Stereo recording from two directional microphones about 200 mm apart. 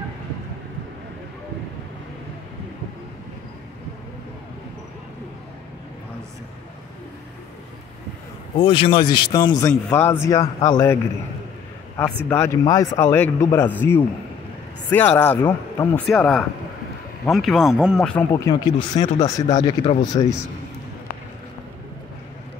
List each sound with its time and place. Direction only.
8.5 s a man's voice: 30° left (ahead or behind)
12.3 s a man's voice: 15° left (ahead or behind); by 20.1 s 30° left (ahead or behind)